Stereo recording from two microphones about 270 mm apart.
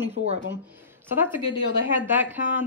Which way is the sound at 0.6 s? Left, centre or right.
Centre.